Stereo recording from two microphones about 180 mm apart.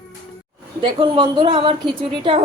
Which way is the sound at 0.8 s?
30° right (ahead or behind).